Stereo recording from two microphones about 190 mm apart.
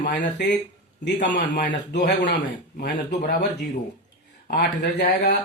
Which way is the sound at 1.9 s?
65° left (ahead or behind).